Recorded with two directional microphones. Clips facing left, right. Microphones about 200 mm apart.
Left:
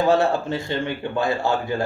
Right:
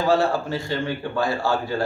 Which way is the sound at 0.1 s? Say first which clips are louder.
Left 1 dB; 20° left (ahead or behind).